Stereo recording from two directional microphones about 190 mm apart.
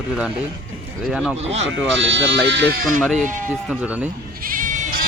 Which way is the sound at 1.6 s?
75° right (ahead or behind).